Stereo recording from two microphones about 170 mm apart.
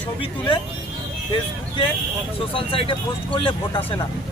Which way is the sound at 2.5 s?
30° left (ahead or behind).